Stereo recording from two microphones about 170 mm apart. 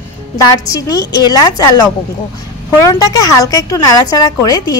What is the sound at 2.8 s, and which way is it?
A woman's voice, 20° left (ahead or behind).